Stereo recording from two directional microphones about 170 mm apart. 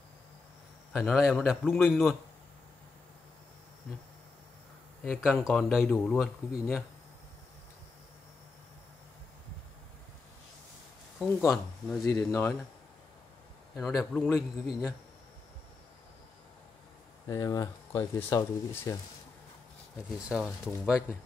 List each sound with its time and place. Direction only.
0.9 s speech: 5° right (ahead or behind)
5.0 s speech: 5° left (ahead or behind)
11.1 s speech: 5° left (ahead or behind)
12.0 s speech: 20° left (ahead or behind)
13.7 s speech: centre (ahead or behind)
17.3 s speech: 20° left (ahead or behind)
20.2 s speech: 5° right (ahead or behind)